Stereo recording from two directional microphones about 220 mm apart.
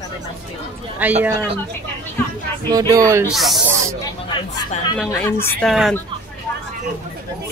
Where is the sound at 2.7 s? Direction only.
15° right (ahead or behind).